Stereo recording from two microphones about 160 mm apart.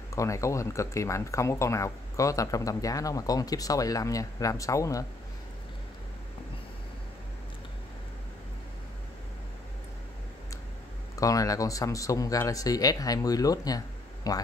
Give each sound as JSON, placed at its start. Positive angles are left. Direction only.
{"t": 0.1, "sound": "speech", "side_deg": 20}
{"t": 11.1, "sound": "speech", "side_deg": 20}